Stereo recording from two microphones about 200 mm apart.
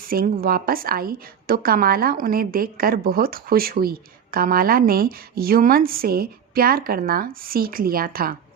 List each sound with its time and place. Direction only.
0.1 s a woman's voice: 45° right (ahead or behind)